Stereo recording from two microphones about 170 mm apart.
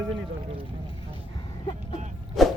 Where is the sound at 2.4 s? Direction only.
Centre (ahead or behind).